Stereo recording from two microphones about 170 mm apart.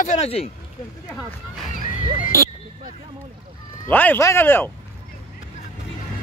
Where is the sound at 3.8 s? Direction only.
10° left (ahead or behind).